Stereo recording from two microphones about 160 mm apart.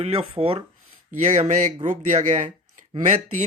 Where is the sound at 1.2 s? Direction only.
45° right (ahead or behind).